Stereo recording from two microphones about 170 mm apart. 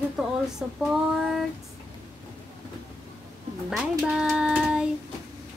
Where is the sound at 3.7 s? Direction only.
Centre (ahead or behind).